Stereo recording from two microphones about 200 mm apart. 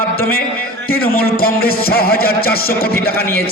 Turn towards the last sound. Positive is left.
turn(degrees=50)  # may be behind; listen again after turning